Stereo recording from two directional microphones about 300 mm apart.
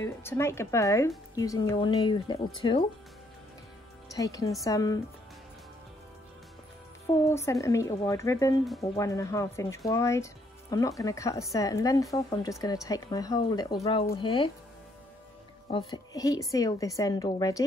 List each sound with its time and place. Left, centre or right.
0.0 s speech: centre
4.1 s speech: centre
7.1 s speech: centre
15.9 s speech: centre